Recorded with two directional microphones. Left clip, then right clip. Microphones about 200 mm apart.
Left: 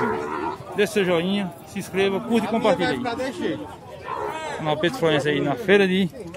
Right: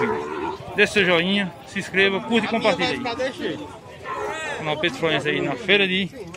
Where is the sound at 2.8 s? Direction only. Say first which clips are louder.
Right 1 dB; 60° left (ahead or behind).